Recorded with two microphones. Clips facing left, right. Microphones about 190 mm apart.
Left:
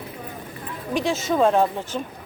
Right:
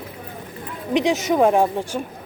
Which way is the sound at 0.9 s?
15° right (ahead or behind).